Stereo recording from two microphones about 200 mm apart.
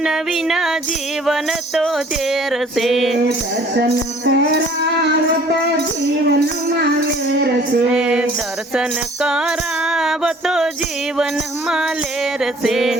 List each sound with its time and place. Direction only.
0.0 s music: centre (ahead or behind)
3.8 s music: 55° right (ahead or behind)
7.9 s music: 5° right (ahead or behind)
9.9 s music: centre (ahead or behind)
12.6 s music: centre (ahead or behind)